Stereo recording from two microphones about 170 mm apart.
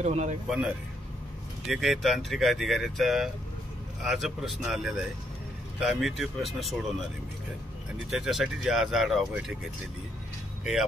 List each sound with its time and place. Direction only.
0.0 s speech: 45° right (ahead or behind)
0.5 s speech: 5° right (ahead or behind)
8.1 s speech: centre (ahead or behind)
10.6 s speech: 5° right (ahead or behind)